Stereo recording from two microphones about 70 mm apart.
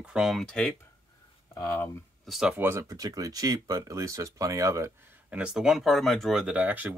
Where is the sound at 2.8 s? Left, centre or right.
Right.